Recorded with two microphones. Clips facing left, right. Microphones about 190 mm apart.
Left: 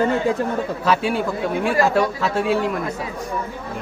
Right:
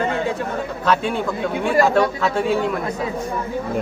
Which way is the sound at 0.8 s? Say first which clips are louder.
Right 1 dB; 5° left (ahead or behind).